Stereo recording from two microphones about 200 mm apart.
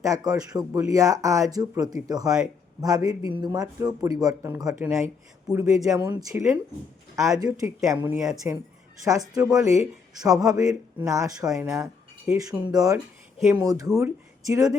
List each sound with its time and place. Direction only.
0.0 s speech: 15° right (ahead or behind)